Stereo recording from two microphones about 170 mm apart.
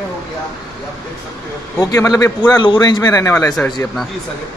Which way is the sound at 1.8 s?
20° left (ahead or behind).